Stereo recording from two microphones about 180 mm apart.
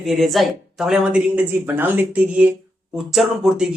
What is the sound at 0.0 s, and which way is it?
Speech, centre (ahead or behind).